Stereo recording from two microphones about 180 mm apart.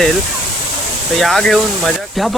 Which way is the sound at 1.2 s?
Centre (ahead or behind).